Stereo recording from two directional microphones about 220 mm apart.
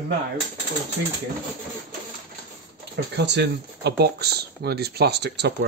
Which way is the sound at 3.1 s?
50° right (ahead or behind).